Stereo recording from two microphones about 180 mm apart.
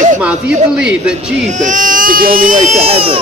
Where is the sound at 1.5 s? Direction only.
45° right (ahead or behind).